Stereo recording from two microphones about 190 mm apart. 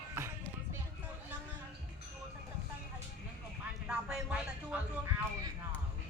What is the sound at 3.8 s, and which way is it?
Vehicle, 5° right (ahead or behind).